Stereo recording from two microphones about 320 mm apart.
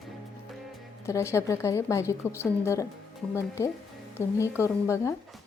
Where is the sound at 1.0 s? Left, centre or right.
Centre.